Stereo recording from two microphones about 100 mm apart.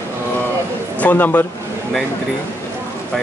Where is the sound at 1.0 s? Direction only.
20° left (ahead or behind).